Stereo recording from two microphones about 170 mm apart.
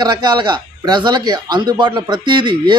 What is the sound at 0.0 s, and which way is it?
A man's voice, 25° right (ahead or behind).